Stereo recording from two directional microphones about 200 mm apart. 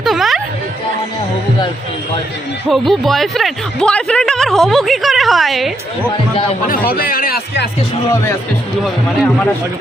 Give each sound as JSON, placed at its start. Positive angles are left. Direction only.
{"t": 0.0, "sound": "music", "side_deg": 0}
{"t": 2.7, "sound": "speech", "side_deg": 0}
{"t": 6.9, "sound": "a man's voice", "side_deg": 45}
{"t": 8.1, "sound": "speech", "side_deg": 10}